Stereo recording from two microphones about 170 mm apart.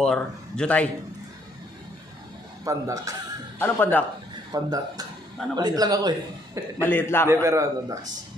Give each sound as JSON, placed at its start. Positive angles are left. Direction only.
{"t": 0.0, "sound": "a man's voice", "side_deg": 5}
{"t": 2.6, "sound": "speech", "side_deg": -20}
{"t": 3.5, "sound": "speech", "side_deg": 10}
{"t": 4.5, "sound": "speech", "side_deg": -20}
{"t": 6.8, "sound": "speech", "side_deg": 10}
{"t": 7.2, "sound": "speech", "side_deg": -15}